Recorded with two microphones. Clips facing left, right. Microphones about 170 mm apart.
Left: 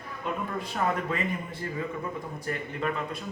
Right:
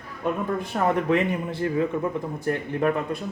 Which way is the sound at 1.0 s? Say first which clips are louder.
Right 8 dB; 75° right (ahead or behind).